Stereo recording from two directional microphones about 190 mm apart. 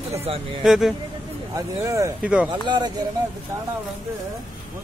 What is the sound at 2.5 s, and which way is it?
Speech, 20° right (ahead or behind).